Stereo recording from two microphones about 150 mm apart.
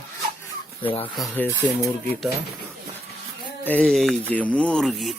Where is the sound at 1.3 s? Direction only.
10° left (ahead or behind).